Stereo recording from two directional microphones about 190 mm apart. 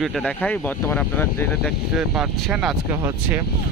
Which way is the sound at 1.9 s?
5° right (ahead or behind).